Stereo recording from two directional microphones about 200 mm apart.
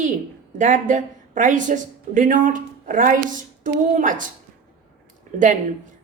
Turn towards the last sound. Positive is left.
turn(degrees=-40)  # may be behind; listen again after turning